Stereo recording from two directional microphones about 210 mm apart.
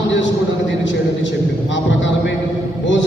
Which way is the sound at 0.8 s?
60° left (ahead or behind).